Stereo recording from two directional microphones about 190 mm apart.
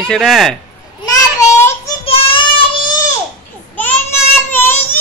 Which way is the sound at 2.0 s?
30° left (ahead or behind).